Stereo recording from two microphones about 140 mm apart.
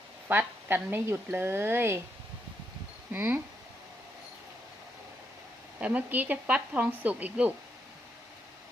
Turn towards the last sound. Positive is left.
turn(degrees=-10)  # may be behind; listen again after turning